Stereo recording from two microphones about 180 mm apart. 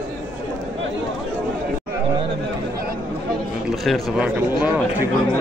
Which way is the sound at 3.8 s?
5° right (ahead or behind).